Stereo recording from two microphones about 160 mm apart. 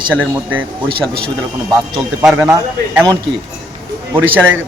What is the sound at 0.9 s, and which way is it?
Speech, 75° right (ahead or behind).